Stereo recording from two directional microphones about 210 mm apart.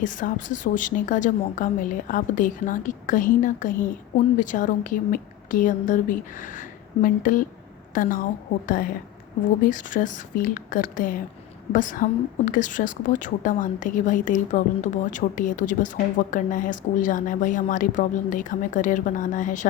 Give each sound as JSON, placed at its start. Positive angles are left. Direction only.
{"t": 0.0, "sound": "a woman's voice", "side_deg": 40}